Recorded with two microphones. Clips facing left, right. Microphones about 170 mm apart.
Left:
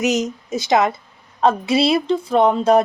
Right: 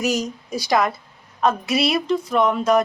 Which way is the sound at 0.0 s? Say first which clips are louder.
Left 3 dB; 20° left (ahead or behind).